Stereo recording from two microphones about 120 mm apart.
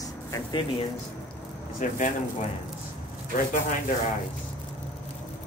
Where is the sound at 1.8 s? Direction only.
90° left.